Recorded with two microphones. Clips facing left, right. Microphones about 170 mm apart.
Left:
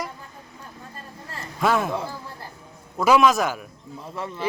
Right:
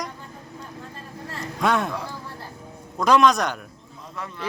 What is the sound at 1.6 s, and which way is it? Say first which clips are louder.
Speech: left 1 dB; centre (ahead or behind).